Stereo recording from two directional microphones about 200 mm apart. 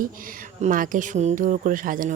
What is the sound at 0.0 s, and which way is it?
Speech, 45° right (ahead or behind).